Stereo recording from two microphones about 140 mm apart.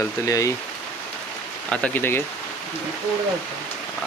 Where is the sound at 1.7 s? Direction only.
10° left (ahead or behind).